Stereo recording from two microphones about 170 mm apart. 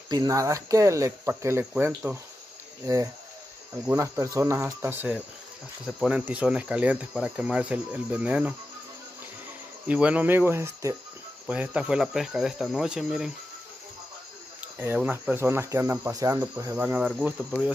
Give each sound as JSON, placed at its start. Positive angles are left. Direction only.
{"t": 0.1, "sound": "speech", "side_deg": -20}
{"t": 3.8, "sound": "speech", "side_deg": -15}
{"t": 9.8, "sound": "speech", "side_deg": -5}
{"t": 14.8, "sound": "speech", "side_deg": -10}